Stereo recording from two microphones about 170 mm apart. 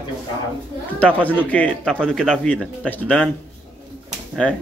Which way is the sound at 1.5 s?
10° left (ahead or behind).